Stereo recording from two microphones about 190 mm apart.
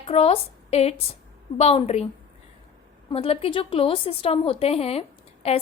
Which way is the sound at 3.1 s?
30° left (ahead or behind).